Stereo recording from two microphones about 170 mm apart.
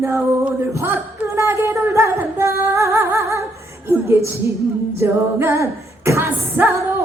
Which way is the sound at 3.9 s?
15° right (ahead or behind).